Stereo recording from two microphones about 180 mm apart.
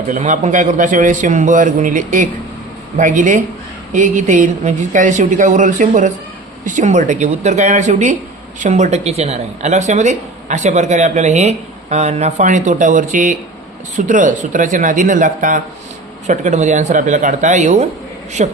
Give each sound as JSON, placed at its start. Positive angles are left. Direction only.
{"t": 0.1, "sound": "a man's voice", "side_deg": -40}